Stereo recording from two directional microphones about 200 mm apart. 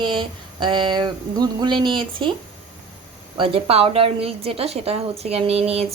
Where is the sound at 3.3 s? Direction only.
25° right (ahead or behind).